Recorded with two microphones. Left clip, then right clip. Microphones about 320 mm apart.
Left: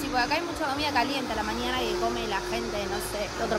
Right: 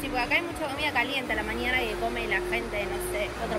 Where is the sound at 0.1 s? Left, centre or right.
Left.